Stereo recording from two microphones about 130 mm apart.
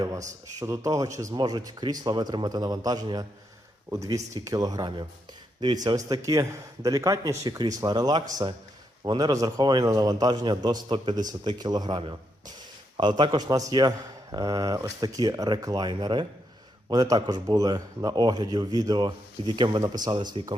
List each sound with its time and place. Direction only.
0.6 s a man's voice: 25° right (ahead or behind)